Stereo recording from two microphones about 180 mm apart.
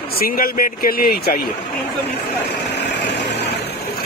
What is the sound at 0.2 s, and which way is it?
A man's voice, 55° left (ahead or behind).